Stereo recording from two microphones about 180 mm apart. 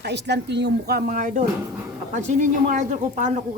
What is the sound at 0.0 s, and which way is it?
A woman's voice, 70° right (ahead or behind).